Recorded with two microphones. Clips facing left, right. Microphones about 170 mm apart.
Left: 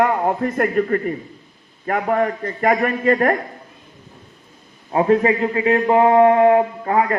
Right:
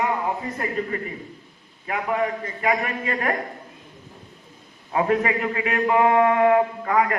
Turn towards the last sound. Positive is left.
turn(degrees=30)  # may be behind; listen again after turning